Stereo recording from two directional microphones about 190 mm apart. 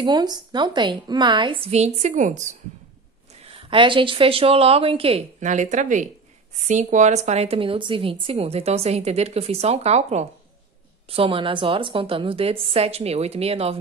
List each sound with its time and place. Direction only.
0.0 s a woman's voice: 20° right (ahead or behind); by 2.5 s 40° right (ahead or behind)
3.4 s a woman's voice: 25° right (ahead or behind)